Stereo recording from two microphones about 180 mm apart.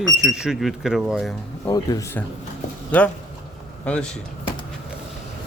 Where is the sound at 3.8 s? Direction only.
5° left (ahead or behind).